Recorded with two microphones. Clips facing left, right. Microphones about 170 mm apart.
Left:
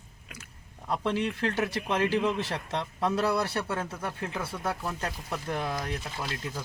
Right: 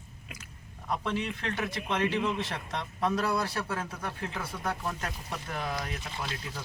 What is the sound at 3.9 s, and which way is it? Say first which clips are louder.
Speech: left 2 dB; 5° left (ahead or behind).